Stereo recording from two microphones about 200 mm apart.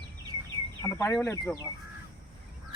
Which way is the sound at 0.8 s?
10° left (ahead or behind).